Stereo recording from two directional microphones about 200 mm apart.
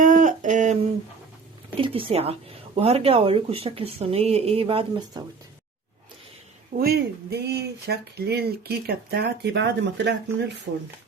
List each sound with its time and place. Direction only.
0.0 s a sound: 40° right (ahead or behind)
1.8 s speech: 25° right (ahead or behind)
6.7 s speech: 50° right (ahead or behind)